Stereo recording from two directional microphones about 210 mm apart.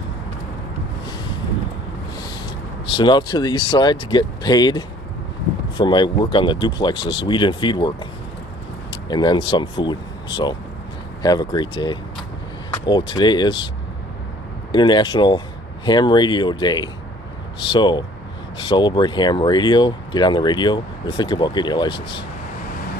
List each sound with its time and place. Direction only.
2.9 s speech: 20° left (ahead or behind)
9.1 s speech: 20° left (ahead or behind)
14.7 s speech: 20° left (ahead or behind)